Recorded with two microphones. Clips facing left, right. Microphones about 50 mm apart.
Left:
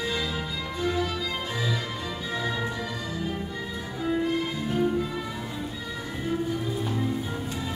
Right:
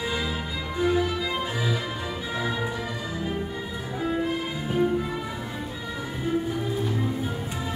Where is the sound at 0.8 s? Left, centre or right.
Centre.